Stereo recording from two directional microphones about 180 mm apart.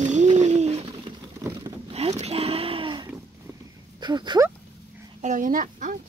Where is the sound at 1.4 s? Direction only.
20° right (ahead or behind).